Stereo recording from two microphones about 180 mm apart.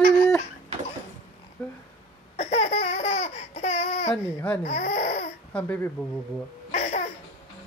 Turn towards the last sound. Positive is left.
turn(degrees=40)  # may be behind; listen again after turning